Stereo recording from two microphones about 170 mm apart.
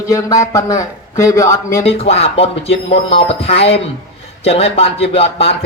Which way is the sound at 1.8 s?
35° left (ahead or behind).